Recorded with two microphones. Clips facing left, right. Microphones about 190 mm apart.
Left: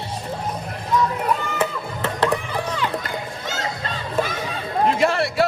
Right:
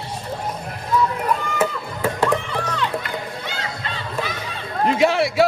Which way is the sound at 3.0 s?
40° left (ahead or behind).